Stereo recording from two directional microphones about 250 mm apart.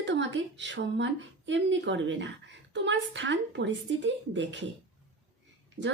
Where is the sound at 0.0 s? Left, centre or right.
Right.